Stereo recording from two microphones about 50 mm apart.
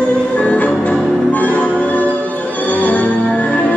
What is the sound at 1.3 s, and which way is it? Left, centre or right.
Change ringing, left.